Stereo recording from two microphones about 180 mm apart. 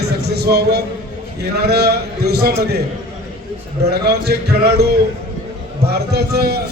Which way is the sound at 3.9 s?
65° right (ahead or behind).